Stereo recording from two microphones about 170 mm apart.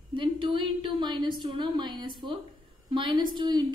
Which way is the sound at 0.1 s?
30° right (ahead or behind).